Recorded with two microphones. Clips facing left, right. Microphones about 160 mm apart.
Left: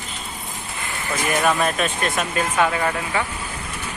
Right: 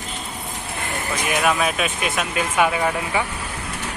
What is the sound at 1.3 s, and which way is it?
Speech, centre (ahead or behind).